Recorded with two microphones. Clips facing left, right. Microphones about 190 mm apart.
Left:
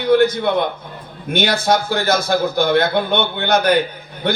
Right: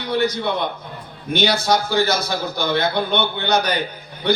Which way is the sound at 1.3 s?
55° left (ahead or behind).